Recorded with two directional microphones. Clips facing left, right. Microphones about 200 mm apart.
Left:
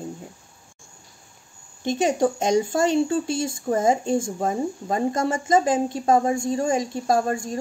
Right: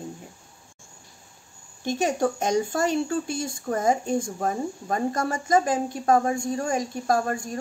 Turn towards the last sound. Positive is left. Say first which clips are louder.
# left 2 dB
turn(degrees=25)  # may be behind; listen again after turning